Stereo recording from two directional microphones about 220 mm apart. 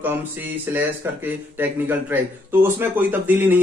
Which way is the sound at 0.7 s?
10° right (ahead or behind).